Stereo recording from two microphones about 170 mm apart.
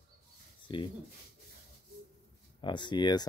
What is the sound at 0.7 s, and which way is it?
Speech, 30° left (ahead or behind).